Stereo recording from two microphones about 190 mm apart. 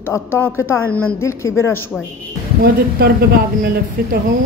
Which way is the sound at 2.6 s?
55° right (ahead or behind).